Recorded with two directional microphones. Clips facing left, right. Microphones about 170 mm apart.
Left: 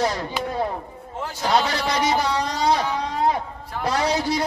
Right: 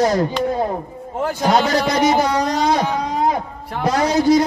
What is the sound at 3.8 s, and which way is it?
Speech, 45° right (ahead or behind).